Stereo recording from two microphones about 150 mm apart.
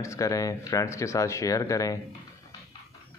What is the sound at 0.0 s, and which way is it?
Speech, 20° left (ahead or behind).